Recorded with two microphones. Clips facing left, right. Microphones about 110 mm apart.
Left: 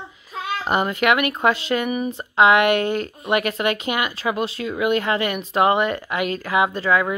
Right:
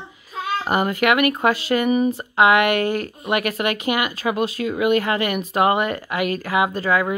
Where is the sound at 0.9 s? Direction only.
50° right (ahead or behind).